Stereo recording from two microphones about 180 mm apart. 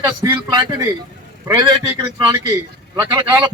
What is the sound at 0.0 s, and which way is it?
A man's voice, 20° right (ahead or behind).